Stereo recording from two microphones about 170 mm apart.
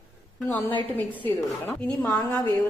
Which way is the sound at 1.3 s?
10° left (ahead or behind).